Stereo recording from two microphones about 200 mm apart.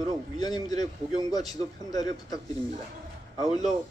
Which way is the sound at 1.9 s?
20° left (ahead or behind).